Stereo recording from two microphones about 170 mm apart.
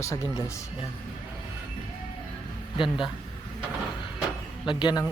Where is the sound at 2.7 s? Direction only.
30° left (ahead or behind).